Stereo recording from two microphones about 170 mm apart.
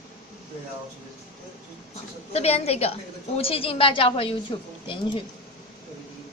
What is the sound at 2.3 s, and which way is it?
A woman's voice, 40° left (ahead or behind).